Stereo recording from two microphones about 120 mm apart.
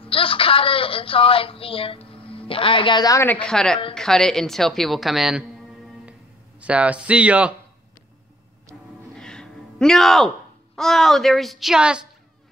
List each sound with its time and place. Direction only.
0.0 s speech: 50° left (ahead or behind)
3.3 s a woman's voice: 10° left (ahead or behind)
6.6 s speech: 10° right (ahead or behind)
8.7 s music: 5° right (ahead or behind)
9.1 s a sound: 5° left (ahead or behind)
10.8 s a woman's voice: 5° left (ahead or behind)